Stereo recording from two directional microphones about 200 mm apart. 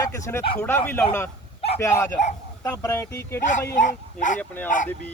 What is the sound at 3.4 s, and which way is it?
Speech, 40° left (ahead or behind).